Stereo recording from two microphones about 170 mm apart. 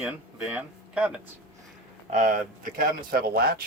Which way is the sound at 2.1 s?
55° right (ahead or behind).